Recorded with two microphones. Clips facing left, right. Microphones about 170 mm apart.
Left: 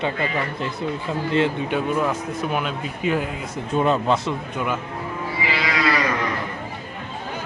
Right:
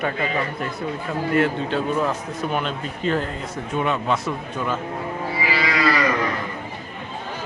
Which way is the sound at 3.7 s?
35° left (ahead or behind).